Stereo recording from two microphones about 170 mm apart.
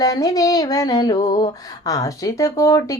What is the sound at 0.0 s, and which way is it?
Speech, 20° left (ahead or behind).